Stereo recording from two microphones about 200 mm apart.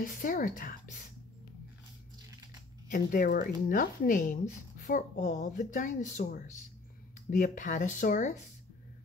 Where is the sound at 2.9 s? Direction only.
40° left (ahead or behind).